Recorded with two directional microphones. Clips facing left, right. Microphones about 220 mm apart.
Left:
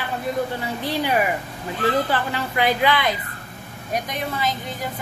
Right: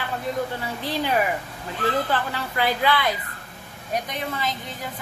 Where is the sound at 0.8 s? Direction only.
10° left (ahead or behind).